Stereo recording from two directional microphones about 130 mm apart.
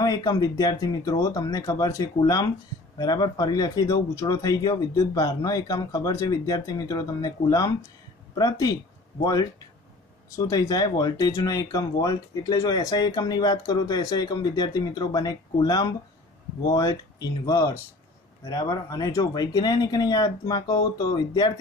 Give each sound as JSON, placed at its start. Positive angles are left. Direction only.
{"t": 0.0, "sound": "speech", "side_deg": 30}